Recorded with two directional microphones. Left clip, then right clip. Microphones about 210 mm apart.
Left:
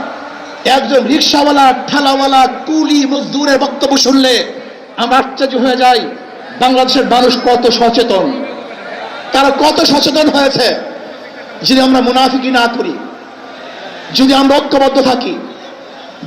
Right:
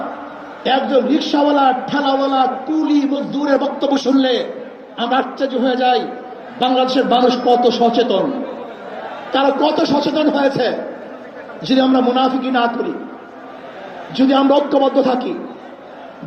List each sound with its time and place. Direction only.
0.6 s a man's voice: 20° left (ahead or behind)
9.3 s a man's voice: 25° left (ahead or behind)
14.2 s a man's voice: 20° left (ahead or behind)